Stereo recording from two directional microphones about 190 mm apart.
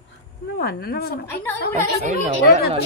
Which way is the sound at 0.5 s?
55° left (ahead or behind).